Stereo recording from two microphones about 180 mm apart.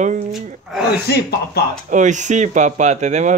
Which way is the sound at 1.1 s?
60° left (ahead or behind).